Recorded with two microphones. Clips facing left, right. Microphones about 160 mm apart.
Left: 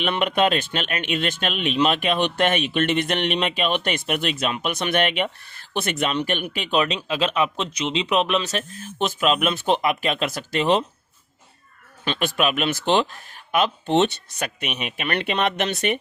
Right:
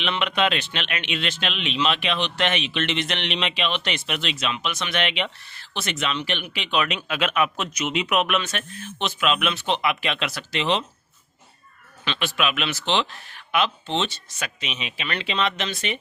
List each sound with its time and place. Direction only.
0.0 s speech: 45° left (ahead or behind)
12.0 s speech: 45° left (ahead or behind)